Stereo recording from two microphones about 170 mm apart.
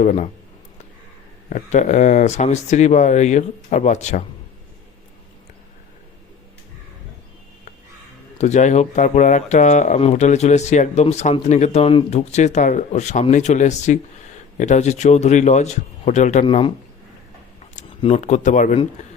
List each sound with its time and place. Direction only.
0.0 s speech: 45° left (ahead or behind)
1.5 s speech: 45° left (ahead or behind)
8.4 s speech: 45° left (ahead or behind)
18.1 s speech: 45° left (ahead or behind)
19.0 s a sound: 45° left (ahead or behind)